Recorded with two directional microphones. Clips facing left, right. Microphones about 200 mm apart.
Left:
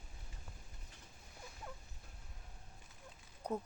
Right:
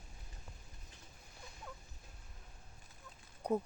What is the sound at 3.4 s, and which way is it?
Speech, 10° right (ahead or behind).